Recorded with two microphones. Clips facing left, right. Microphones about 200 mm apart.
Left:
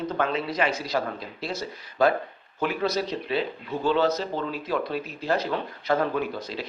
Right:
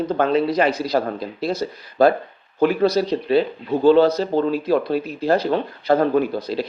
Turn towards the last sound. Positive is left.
turn(degrees=-35)  # may be behind; listen again after turning